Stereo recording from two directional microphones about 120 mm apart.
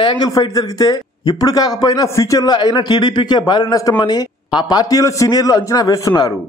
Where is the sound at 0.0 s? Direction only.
40° left (ahead or behind).